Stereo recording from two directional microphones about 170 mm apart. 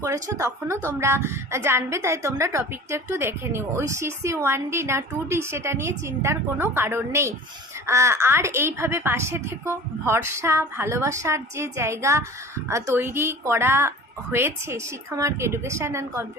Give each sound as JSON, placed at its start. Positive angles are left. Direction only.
{"t": 0.0, "sound": "a woman's voice", "side_deg": -20}